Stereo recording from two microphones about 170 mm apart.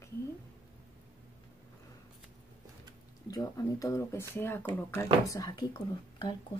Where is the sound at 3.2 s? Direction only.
20° left (ahead or behind).